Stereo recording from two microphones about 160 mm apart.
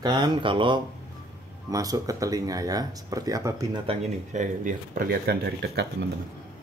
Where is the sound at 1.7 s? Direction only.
20° right (ahead or behind).